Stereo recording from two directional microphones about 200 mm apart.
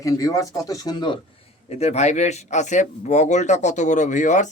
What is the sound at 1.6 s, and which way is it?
Speech, 30° left (ahead or behind).